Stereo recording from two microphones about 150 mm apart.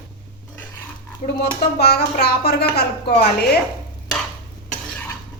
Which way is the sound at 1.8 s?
90° left.